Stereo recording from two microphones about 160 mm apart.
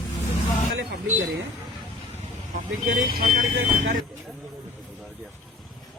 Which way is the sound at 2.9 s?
70° right (ahead or behind).